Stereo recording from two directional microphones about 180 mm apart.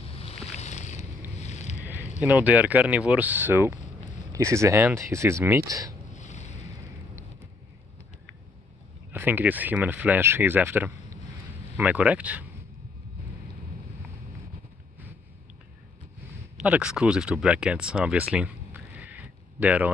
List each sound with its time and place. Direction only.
0.1 s boat: 35° left (ahead or behind)
2.2 s speech: 10° right (ahead or behind)
6.1 s a sound: 40° left (ahead or behind)
9.1 s speech: 10° right (ahead or behind)
16.5 s speech: 5° right (ahead or behind)